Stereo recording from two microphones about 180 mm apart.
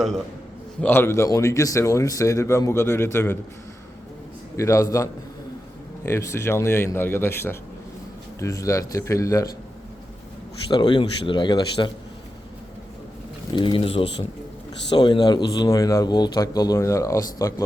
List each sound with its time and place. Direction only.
0.8 s speech: 10° left (ahead or behind)
4.5 s speech: 15° left (ahead or behind)
6.1 s speech: 15° left (ahead or behind)
10.7 s speech: 25° left (ahead or behind)
13.5 s speech: 25° left (ahead or behind)